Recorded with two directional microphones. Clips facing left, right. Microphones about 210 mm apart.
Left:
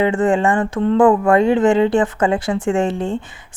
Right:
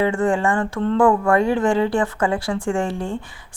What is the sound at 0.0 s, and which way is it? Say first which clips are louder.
Speech: left 3 dB; 20° left (ahead or behind).